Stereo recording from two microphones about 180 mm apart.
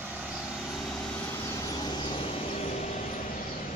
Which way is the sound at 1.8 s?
25° left (ahead or behind).